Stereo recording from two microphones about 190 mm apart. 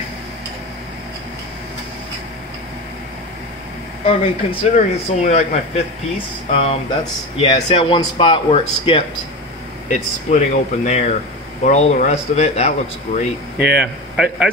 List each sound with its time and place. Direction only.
4.0 s speech: 30° left (ahead or behind)
9.8 s speech: 40° left (ahead or behind)
13.6 s speech: 5° right (ahead or behind)